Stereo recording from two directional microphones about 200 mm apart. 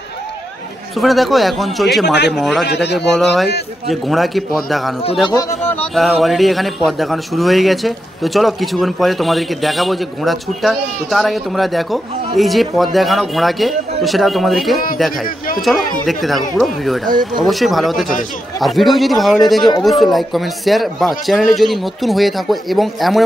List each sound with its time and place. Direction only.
0.9 s a man's voice: centre (ahead or behind)
2.6 s speech: 55° left (ahead or behind)
3.1 s a man's voice: centre (ahead or behind)
17.0 s speech: 45° right (ahead or behind)
17.4 s a man's voice: centre (ahead or behind)